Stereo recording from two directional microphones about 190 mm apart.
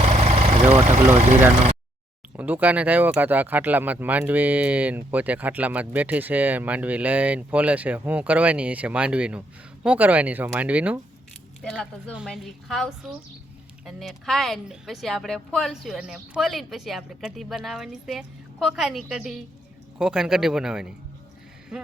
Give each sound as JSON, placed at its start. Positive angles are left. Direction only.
{"t": 0.0, "sound": "vehicle", "side_deg": -35}
{"t": 0.7, "sound": "speech", "side_deg": -35}
{"t": 2.3, "sound": "speech", "side_deg": -10}
{"t": 11.6, "sound": "speech", "side_deg": 5}